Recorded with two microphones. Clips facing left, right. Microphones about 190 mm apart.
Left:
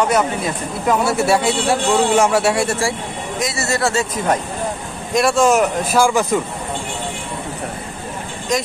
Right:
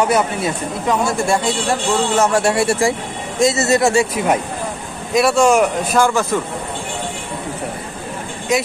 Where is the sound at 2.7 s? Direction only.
20° right (ahead or behind); by 6.4 s 15° left (ahead or behind).